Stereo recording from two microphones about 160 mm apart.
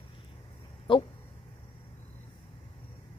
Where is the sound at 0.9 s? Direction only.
30° left (ahead or behind).